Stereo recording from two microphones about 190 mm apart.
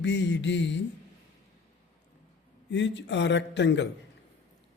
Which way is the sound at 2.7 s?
70° left (ahead or behind).